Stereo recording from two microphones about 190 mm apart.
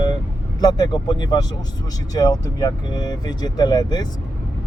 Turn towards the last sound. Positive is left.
turn(degrees=20)  # may be behind; listen again after turning